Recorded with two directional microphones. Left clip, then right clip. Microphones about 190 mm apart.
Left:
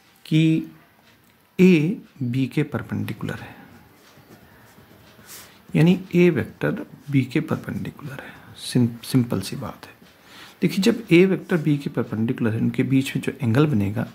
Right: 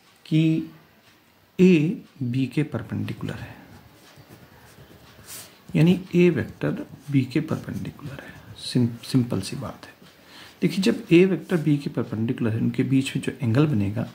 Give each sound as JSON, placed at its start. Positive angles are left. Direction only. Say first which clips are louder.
{"t": 0.2, "sound": "speech", "louder": "left 2 dB", "side_deg": 30}
{"t": 1.6, "sound": "speech", "louder": "left 1 dB", "side_deg": 20}
{"t": 5.7, "sound": "speech", "louder": "left 2 dB", "side_deg": 15}